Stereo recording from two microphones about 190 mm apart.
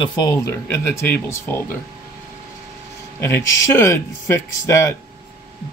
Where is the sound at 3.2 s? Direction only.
10° left (ahead or behind).